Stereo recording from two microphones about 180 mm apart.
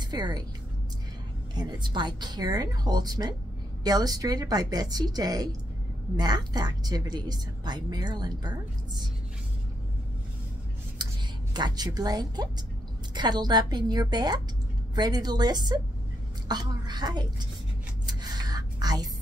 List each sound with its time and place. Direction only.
0.1 s speech: 25° right (ahead or behind)
1.5 s speech: 25° right (ahead or behind)
11.0 s whispering: 25° right (ahead or behind)
11.5 s speech: 25° right (ahead or behind)
18.0 s a sound: 20° right (ahead or behind)